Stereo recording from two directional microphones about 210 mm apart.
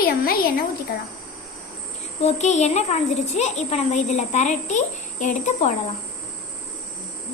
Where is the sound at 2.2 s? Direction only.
35° left (ahead or behind).